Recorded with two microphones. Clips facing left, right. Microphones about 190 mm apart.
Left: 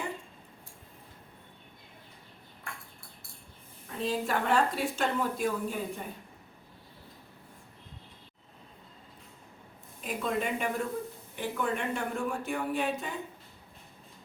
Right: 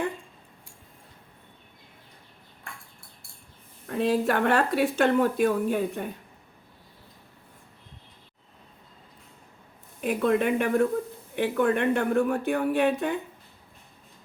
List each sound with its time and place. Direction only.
3.8 s speech: 65° right (ahead or behind)
10.0 s speech: 65° right (ahead or behind)